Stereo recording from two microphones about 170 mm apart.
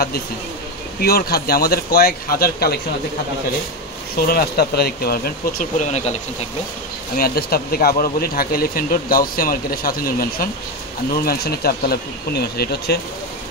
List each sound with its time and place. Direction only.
1.0 s speech: 65° left (ahead or behind)
4.3 s speech: 65° left (ahead or behind); by 6.1 s 40° left (ahead or behind)
7.2 s speech: 65° left (ahead or behind)